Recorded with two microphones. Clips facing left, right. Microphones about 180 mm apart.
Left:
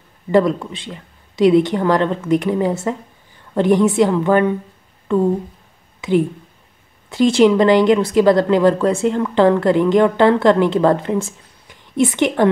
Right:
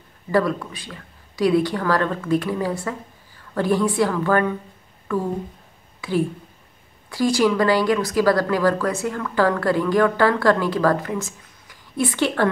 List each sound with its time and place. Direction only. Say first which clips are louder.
0.3 s speech: left 5 dB; 20° left (ahead or behind)
5.0 s a sound: left 7 dB; 25° left (ahead or behind)
7.1 s speech: left 6 dB; 25° left (ahead or behind)